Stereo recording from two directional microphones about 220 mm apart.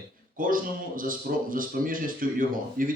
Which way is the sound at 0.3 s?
40° right (ahead or behind).